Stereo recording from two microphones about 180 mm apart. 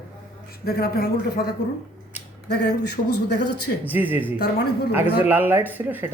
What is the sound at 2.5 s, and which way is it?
Speech, 65° left (ahead or behind).